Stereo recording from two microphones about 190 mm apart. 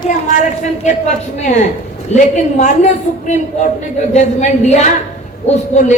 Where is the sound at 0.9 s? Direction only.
40° left (ahead or behind).